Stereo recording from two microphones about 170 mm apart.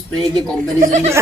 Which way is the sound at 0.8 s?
45° right (ahead or behind).